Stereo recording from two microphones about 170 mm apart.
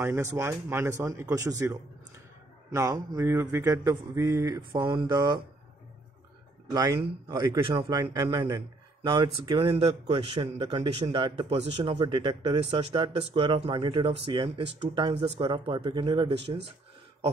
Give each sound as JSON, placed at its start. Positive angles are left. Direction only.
{"t": 0.0, "sound": "speech", "side_deg": -15}
{"t": 4.6, "sound": "speech", "side_deg": -30}
{"t": 6.7, "sound": "a man's voice", "side_deg": -20}